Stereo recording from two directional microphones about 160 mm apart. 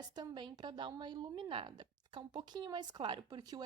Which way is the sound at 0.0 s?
25° right (ahead or behind).